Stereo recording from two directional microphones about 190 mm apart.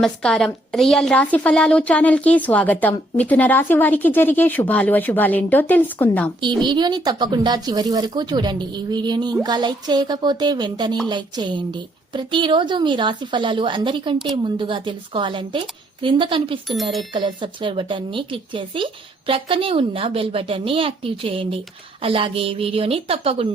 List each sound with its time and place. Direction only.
0.0 s a woman's voice: 5° left (ahead or behind)
6.6 s speech: 25° right (ahead or behind)